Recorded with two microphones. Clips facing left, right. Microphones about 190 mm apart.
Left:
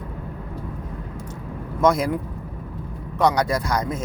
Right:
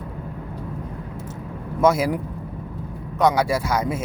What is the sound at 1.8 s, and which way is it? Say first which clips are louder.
Speech: right 1 dB; 5° right (ahead or behind).